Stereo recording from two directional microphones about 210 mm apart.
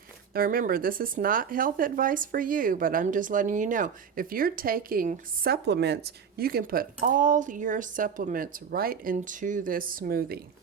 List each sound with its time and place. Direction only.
0.3 s speech: 45° right (ahead or behind)